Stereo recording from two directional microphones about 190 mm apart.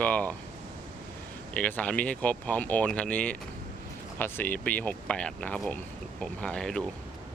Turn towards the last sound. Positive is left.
turn(degrees=5)  # may be behind; listen again after turning